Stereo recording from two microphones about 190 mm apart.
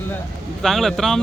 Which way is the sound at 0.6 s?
Centre (ahead or behind).